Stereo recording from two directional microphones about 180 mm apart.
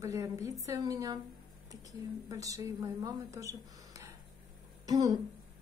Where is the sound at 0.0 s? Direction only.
15° right (ahead or behind).